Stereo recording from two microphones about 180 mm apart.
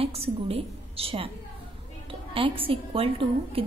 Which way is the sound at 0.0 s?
35° right (ahead or behind).